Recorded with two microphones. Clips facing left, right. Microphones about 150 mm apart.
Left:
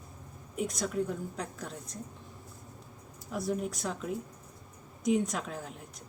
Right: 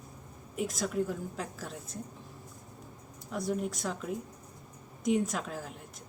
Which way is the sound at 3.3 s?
Centre (ahead or behind).